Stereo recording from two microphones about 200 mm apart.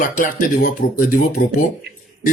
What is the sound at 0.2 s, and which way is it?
Speech, 45° left (ahead or behind).